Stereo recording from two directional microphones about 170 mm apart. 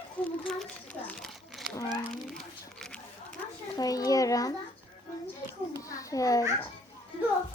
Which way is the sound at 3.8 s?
20° left (ahead or behind).